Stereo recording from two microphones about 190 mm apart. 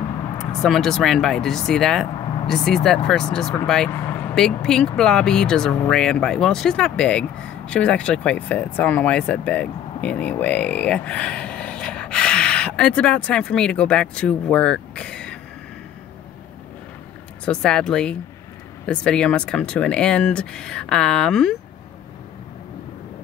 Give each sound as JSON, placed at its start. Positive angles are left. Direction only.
{"t": 0.4, "sound": "speech", "side_deg": 5}
{"t": 17.5, "sound": "speech", "side_deg": 5}